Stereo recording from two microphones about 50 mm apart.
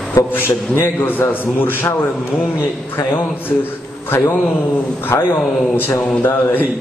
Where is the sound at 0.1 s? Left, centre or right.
Left.